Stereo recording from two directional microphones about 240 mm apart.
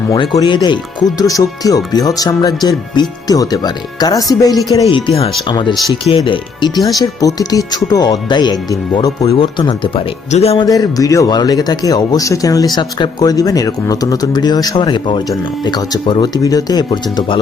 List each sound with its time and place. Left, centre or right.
0.1 s speech: centre